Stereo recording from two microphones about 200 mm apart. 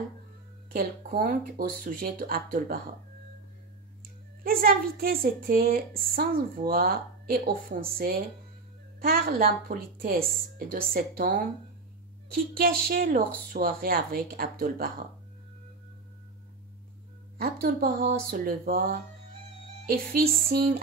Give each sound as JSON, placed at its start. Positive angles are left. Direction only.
{"t": 0.7, "sound": "a woman's voice", "side_deg": -45}
{"t": 4.4, "sound": "a woman's voice", "side_deg": -45}
{"t": 12.5, "sound": "a woman's voice", "side_deg": -50}
{"t": 17.4, "sound": "a woman's voice", "side_deg": -50}